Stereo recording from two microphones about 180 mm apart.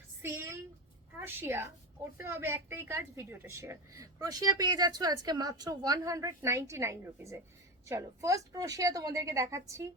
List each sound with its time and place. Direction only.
0.2 s a woman's voice: 15° right (ahead or behind)